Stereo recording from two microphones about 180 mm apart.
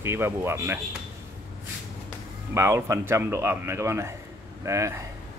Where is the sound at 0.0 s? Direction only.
15° right (ahead or behind).